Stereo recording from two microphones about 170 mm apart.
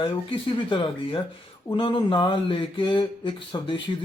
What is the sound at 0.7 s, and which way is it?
A man's voice, 30° left (ahead or behind).